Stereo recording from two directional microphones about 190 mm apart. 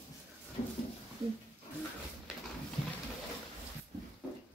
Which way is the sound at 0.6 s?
30° left (ahead or behind).